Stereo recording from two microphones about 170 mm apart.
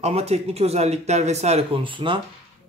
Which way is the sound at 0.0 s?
40° right (ahead or behind).